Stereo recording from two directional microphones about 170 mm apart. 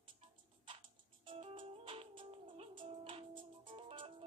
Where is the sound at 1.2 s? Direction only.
35° right (ahead or behind).